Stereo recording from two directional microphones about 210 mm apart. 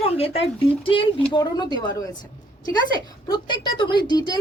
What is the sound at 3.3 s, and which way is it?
A woman's voice, 20° left (ahead or behind).